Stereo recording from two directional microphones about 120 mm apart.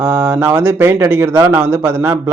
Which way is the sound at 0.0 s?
20° right (ahead or behind).